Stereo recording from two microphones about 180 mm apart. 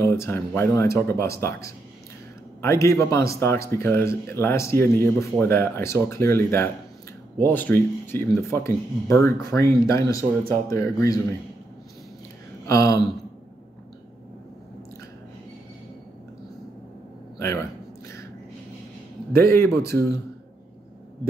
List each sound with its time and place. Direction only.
0.0 s speech: 15° left (ahead or behind)
12.6 s speech: 15° left (ahead or behind)
19.3 s speech: 15° left (ahead or behind)